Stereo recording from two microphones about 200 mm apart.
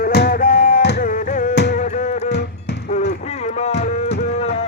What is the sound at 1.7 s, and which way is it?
Music, 40° left (ahead or behind).